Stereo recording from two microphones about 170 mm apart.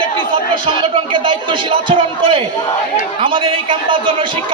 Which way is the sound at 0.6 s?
30° right (ahead or behind).